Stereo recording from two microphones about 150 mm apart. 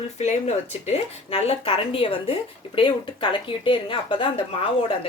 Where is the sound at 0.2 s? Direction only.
50° left (ahead or behind).